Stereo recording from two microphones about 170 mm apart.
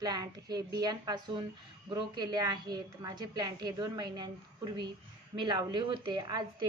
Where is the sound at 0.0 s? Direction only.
20° right (ahead or behind).